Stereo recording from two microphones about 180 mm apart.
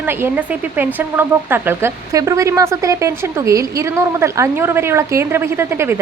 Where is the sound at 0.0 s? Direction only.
10° right (ahead or behind).